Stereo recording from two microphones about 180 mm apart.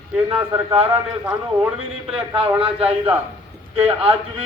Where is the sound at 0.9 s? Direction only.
5° right (ahead or behind).